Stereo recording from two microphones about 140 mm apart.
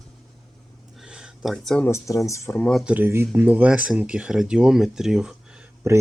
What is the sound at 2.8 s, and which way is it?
Speech, 10° right (ahead or behind).